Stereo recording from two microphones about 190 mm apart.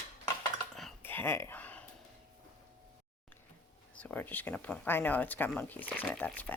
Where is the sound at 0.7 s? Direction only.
5° left (ahead or behind).